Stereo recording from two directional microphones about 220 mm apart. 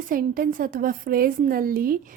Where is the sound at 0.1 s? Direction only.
40° right (ahead or behind).